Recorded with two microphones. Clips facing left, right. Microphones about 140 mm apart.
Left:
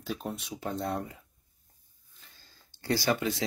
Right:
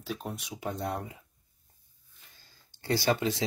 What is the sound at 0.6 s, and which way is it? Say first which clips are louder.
Speech: left 1 dB; 15° right (ahead or behind).